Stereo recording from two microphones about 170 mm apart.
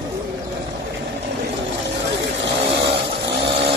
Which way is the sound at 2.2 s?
90° right.